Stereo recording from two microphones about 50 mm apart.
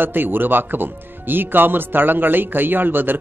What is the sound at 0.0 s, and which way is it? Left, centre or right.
Speech, right.